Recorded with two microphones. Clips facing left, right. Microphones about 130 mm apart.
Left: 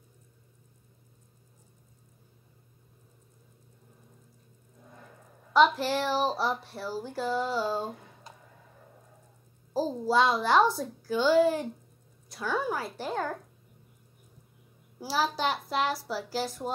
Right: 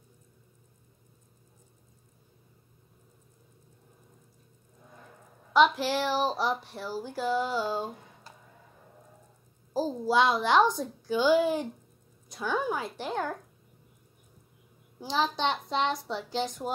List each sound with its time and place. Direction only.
5.5 s a woman's voice: centre (ahead or behind)
6.9 s a woman's voice: 5° right (ahead or behind)
9.8 s a woman's voice: centre (ahead or behind)
15.0 s a woman's voice: 5° left (ahead or behind)